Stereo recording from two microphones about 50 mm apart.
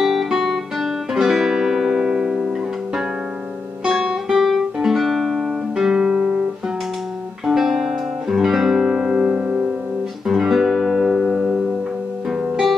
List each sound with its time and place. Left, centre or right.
0.0 s guitar: centre
3.8 s music: centre
7.4 s music: centre